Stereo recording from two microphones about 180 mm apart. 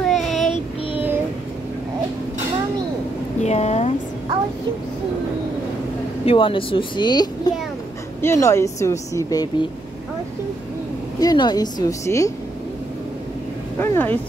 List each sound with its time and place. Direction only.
0.0 s child singing: centre (ahead or behind)
3.3 s a sound: 40° left (ahead or behind)
6.2 s a woman's voice: 30° left (ahead or behind)
11.1 s speech: 20° left (ahead or behind)
13.7 s a woman's voice: 10° left (ahead or behind)